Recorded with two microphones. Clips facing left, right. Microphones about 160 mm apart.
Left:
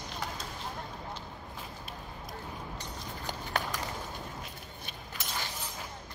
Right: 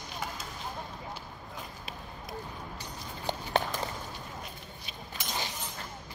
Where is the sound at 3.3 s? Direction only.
25° right (ahead or behind).